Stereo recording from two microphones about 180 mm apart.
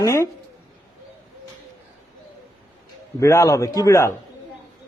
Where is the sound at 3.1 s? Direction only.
15° left (ahead or behind).